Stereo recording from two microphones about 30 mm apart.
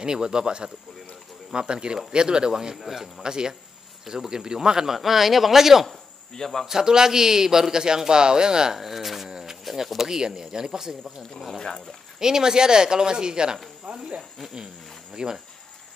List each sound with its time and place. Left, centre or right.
0.0 s a man's voice: right
3.3 s a man's voice: right
4.9 s speech: centre
6.3 s speech: centre
6.8 s a man's voice: centre
8.7 s speech: centre
9.3 s a sound: centre
9.9 s a man's voice: right
12.2 s a man's voice: centre
13.9 s speech: right
15.2 s a man's voice: right